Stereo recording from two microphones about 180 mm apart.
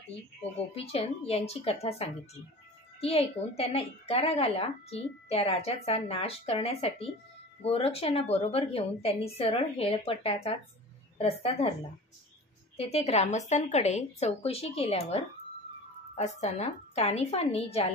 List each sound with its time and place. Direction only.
0.7 s a woman's voice: 35° left (ahead or behind)
12.7 s a woman's voice: 35° left (ahead or behind)